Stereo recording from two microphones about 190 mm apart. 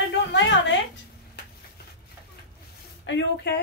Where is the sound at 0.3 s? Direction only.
75° left (ahead or behind).